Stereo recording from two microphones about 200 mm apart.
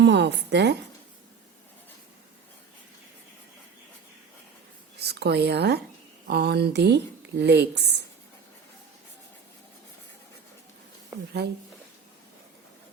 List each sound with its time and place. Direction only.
0.0 s a woman's voice: 60° right (ahead or behind)
4.9 s speech: 55° right (ahead or behind)